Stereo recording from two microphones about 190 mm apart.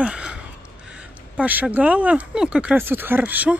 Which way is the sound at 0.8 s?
5° right (ahead or behind).